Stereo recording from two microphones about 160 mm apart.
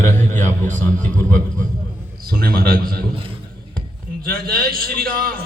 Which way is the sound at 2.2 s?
65° right (ahead or behind).